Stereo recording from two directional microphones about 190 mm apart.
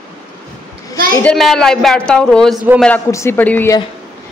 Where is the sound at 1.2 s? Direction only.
Centre (ahead or behind).